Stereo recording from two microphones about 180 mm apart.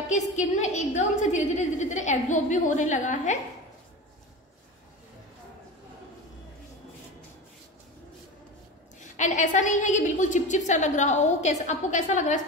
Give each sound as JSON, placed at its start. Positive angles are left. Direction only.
{"t": 0.1, "sound": "a woman's voice", "side_deg": 40}
{"t": 9.1, "sound": "a woman's voice", "side_deg": 40}